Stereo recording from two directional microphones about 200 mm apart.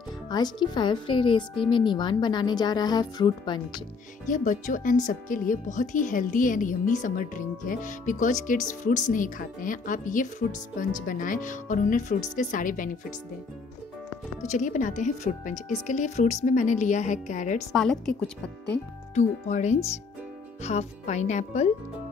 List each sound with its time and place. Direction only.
0.3 s speech: 20° left (ahead or behind)
4.3 s speech: 40° left (ahead or behind)
14.4 s speech: 35° left (ahead or behind)
17.7 s a woman's voice: centre (ahead or behind)
19.1 s speech: 35° left (ahead or behind)